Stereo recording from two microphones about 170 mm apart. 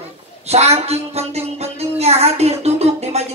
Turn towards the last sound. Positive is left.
turn(degrees=-40)  # may be behind; listen again after turning